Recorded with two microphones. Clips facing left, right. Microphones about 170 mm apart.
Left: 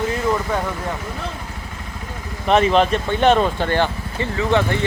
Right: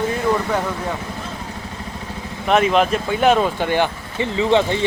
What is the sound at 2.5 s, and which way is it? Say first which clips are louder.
Speech: left 1 dB; centre (ahead or behind).